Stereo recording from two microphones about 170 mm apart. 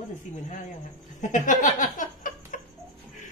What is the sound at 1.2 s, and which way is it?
Speech, 50° left (ahead or behind).